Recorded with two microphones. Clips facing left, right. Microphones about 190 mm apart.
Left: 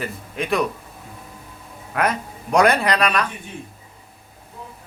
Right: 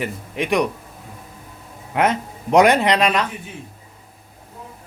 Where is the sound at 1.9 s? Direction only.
20° right (ahead or behind).